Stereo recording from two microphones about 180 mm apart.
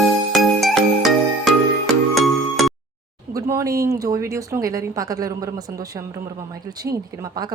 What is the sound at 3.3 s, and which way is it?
A woman's voice, 15° right (ahead or behind).